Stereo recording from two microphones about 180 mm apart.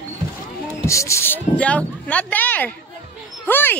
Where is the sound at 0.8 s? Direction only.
15° left (ahead or behind).